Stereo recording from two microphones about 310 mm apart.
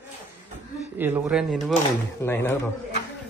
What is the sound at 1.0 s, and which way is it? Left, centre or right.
Speech, centre.